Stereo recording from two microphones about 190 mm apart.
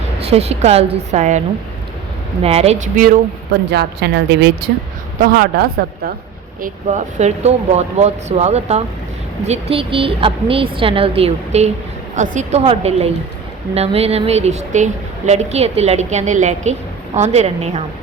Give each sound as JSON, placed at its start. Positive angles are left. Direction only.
{"t": 0.2, "sound": "speech", "side_deg": -30}
{"t": 2.4, "sound": "speech", "side_deg": -35}
{"t": 3.7, "sound": "a woman's voice", "side_deg": -65}
{"t": 5.2, "sound": "a woman's voice", "side_deg": -50}
{"t": 6.6, "sound": "a woman's voice", "side_deg": -40}